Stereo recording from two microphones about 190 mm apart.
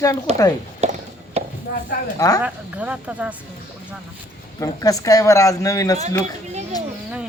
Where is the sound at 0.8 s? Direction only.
35° right (ahead or behind).